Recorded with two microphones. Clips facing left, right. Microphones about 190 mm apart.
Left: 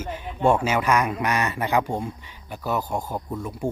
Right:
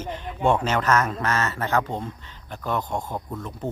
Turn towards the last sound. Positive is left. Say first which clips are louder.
# left 3 dB
turn(degrees=10)  # may be behind; listen again after turning